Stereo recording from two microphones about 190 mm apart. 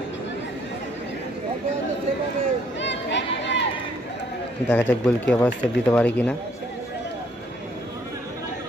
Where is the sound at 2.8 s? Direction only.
70° left (ahead or behind).